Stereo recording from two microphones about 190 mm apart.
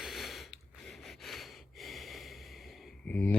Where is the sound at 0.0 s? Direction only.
Centre (ahead or behind).